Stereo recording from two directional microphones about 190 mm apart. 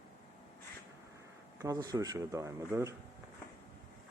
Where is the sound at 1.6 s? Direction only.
20° right (ahead or behind).